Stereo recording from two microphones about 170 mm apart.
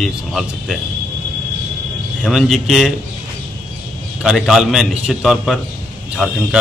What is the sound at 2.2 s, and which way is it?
Speech, centre (ahead or behind).